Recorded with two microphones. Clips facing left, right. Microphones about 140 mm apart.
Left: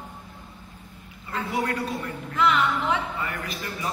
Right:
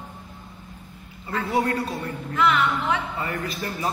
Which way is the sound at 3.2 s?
35° right (ahead or behind).